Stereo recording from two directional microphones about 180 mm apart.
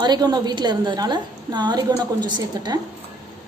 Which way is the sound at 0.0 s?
25° right (ahead or behind).